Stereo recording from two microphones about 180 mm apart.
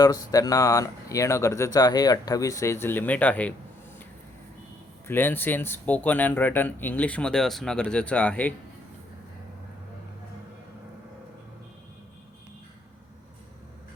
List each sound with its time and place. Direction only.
0.0 s speech: 20° left (ahead or behind)
5.0 s speech: 10° left (ahead or behind)